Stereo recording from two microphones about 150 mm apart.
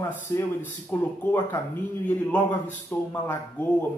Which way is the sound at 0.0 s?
15° left (ahead or behind).